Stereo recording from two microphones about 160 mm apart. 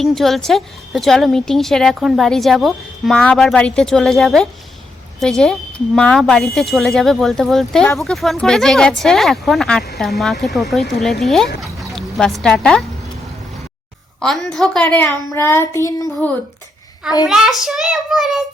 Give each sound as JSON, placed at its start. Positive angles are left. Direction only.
{"t": 0.0, "sound": "a woman's voice", "side_deg": 0}
{"t": 14.2, "sound": "a woman's voice", "side_deg": 0}
{"t": 15.3, "sound": "child singing", "side_deg": 15}
{"t": 17.2, "sound": "a woman's voice", "side_deg": 0}